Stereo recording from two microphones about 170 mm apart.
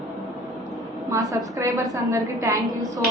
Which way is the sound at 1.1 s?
20° right (ahead or behind).